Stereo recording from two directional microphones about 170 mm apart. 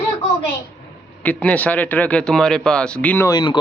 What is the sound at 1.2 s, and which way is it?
Speech, 10° left (ahead or behind).